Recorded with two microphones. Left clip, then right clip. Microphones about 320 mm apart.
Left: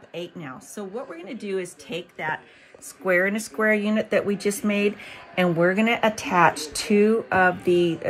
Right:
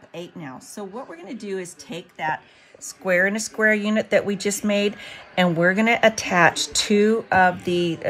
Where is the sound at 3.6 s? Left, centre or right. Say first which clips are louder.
Right 2 dB; centre.